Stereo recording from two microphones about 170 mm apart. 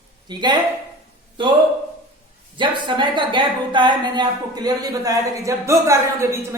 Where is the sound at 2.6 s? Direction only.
25° right (ahead or behind).